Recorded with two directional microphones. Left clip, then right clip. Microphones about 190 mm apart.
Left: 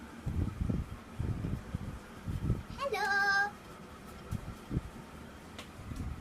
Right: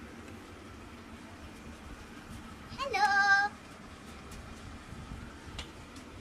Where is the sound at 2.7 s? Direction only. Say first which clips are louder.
Right 4 dB; 30° left (ahead or behind).